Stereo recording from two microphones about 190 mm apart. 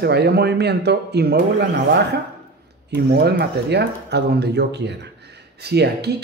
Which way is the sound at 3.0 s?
55° right (ahead or behind).